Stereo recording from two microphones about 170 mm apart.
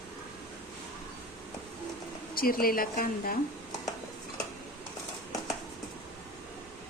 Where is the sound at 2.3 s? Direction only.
60° left (ahead or behind).